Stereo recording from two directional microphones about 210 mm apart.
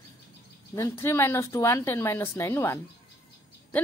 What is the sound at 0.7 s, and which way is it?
A woman's voice, 15° left (ahead or behind).